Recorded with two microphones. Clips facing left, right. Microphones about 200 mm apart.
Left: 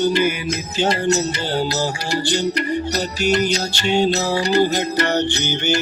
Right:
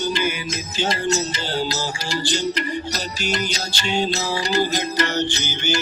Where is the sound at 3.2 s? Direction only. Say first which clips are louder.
Left 8 dB; 60° left (ahead or behind).